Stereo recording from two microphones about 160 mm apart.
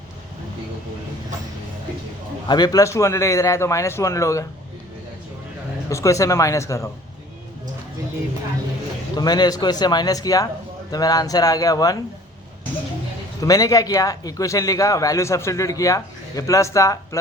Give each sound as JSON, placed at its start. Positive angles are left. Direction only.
{"t": 2.5, "sound": "a man's voice", "side_deg": 25}
{"t": 5.9, "sound": "a man's voice", "side_deg": 20}
{"t": 9.1, "sound": "a man's voice", "side_deg": 25}
{"t": 13.4, "sound": "a man's voice", "side_deg": 20}